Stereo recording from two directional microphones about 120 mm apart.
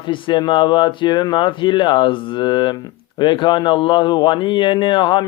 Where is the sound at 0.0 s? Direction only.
40° left (ahead or behind).